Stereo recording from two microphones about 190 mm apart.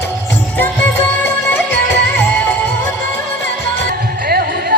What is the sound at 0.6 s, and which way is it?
Music, 10° left (ahead or behind).